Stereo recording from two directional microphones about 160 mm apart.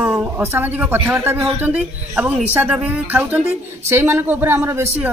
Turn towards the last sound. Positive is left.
turn(degrees=-15)  # may be behind; listen again after turning